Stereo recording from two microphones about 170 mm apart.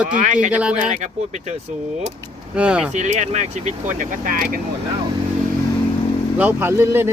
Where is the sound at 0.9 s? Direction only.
45° right (ahead or behind).